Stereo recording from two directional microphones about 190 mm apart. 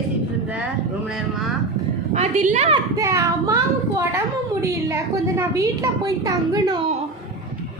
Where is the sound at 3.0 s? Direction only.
15° right (ahead or behind).